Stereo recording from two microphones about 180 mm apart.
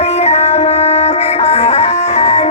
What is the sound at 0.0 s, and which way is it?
Music, 35° left (ahead or behind).